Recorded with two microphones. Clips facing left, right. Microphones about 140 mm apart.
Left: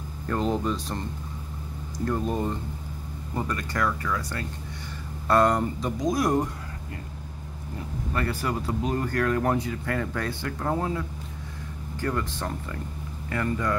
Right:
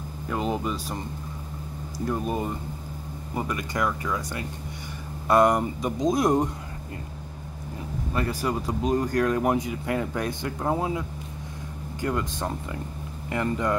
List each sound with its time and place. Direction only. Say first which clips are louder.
0.3 s speech: left 2 dB; 5° right (ahead or behind)
2.0 s speech: left 1 dB; 10° right (ahead or behind)
8.1 s speech: right 1 dB; 15° right (ahead or behind)